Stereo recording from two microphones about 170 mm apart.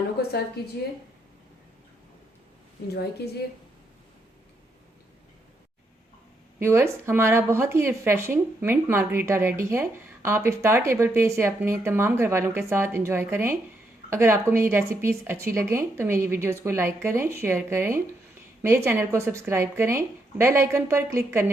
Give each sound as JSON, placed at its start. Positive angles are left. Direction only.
{"t": 2.9, "sound": "a woman's voice", "side_deg": 75}
{"t": 6.6, "sound": "speech", "side_deg": -15}